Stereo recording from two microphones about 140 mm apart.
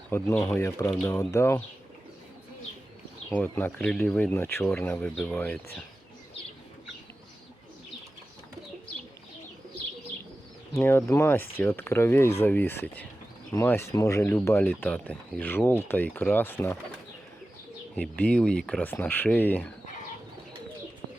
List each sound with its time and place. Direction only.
0.3 s speech: 10° left (ahead or behind)
0.6 s speech: 25° left (ahead or behind)
3.2 s speech: 10° left (ahead or behind)
10.8 s speech: 20° left (ahead or behind)
17.9 s speech: 10° left (ahead or behind)